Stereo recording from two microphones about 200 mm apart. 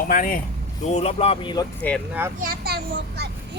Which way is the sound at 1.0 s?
30° left (ahead or behind).